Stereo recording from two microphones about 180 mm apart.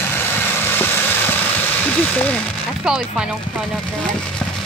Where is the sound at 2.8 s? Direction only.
5° right (ahead or behind).